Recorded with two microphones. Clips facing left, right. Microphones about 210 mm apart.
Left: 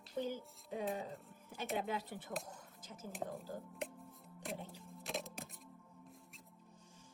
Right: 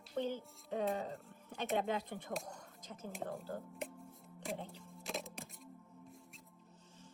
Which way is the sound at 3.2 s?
Centre (ahead or behind).